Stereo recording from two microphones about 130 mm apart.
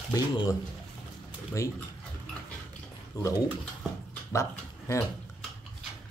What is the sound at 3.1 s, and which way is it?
Speech, 30° left (ahead or behind).